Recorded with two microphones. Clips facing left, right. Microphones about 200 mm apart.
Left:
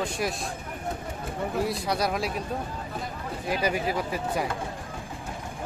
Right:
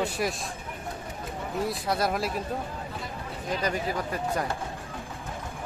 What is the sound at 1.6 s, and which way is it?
Speech, centre (ahead or behind).